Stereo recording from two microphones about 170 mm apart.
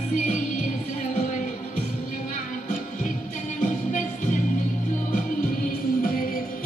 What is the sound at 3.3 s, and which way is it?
Music, 50° left (ahead or behind).